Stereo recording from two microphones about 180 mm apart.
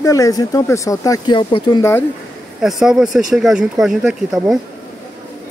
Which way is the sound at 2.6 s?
Centre (ahead or behind).